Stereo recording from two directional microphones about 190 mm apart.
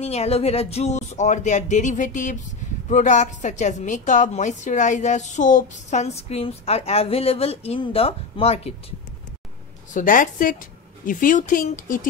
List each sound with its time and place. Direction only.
0.0 s a woman's voice: 35° left (ahead or behind)
9.9 s speech: 45° left (ahead or behind)